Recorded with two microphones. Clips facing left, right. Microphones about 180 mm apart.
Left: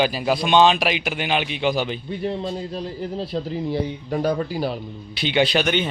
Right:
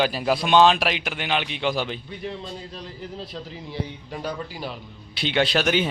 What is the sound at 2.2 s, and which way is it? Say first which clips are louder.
A man's voice: left 10 dB; 40° left (ahead or behind).